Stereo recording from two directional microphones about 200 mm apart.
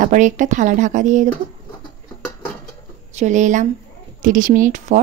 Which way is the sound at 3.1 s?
35° right (ahead or behind).